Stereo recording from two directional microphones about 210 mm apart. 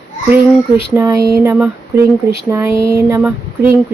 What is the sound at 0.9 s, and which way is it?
Speech, 15° right (ahead or behind).